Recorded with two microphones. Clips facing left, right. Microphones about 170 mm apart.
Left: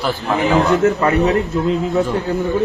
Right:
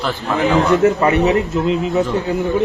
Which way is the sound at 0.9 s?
15° right (ahead or behind).